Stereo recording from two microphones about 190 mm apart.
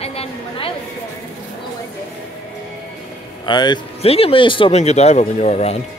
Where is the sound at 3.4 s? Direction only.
25° left (ahead or behind).